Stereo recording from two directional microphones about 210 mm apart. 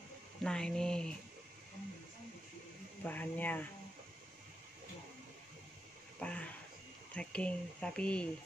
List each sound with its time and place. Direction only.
0.4 s speech: 5° left (ahead or behind)
3.0 s speech: 10° left (ahead or behind)
6.1 s a sound: 5° left (ahead or behind)
7.2 s speech: 5° left (ahead or behind)